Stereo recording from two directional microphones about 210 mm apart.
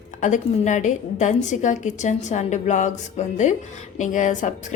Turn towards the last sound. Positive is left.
turn(degrees=35)  # may be behind; listen again after turning